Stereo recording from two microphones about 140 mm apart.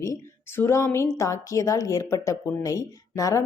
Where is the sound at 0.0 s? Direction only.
20° left (ahead or behind).